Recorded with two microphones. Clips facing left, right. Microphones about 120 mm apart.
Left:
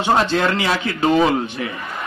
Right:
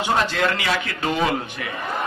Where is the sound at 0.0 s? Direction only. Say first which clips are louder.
Left 4 dB; 30° left (ahead or behind).